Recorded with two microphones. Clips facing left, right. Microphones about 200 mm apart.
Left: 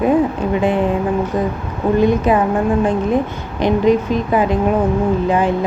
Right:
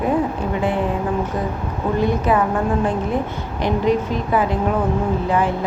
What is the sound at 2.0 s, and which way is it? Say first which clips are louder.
Speech: left 3 dB; 20° left (ahead or behind).